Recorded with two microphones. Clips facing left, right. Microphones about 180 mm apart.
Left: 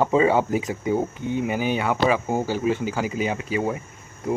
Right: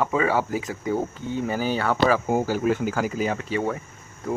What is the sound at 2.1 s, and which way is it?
Speech, 5° right (ahead or behind).